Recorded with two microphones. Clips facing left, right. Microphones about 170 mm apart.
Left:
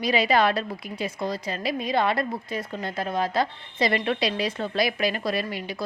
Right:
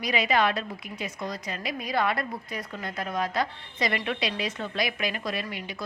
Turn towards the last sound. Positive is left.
turn(degrees=35)  # may be behind; listen again after turning